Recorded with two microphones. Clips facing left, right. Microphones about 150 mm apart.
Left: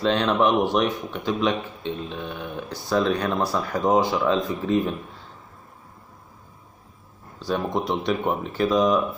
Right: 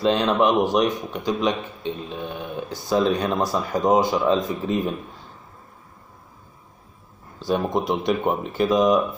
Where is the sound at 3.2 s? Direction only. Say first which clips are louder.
Right 1 dB; 20° right (ahead or behind).